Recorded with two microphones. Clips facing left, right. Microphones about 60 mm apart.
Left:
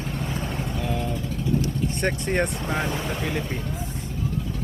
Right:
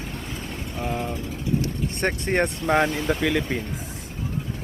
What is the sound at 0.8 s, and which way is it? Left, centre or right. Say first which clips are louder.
Speech: right 3 dB; right.